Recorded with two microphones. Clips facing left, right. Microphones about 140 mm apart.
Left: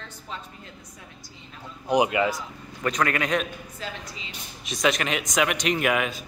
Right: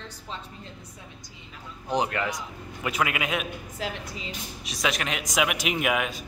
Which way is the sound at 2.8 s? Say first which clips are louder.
Left 3 dB; 5° right (ahead or behind).